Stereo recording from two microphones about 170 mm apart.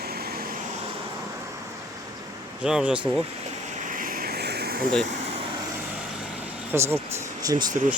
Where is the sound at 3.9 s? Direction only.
55° right (ahead or behind).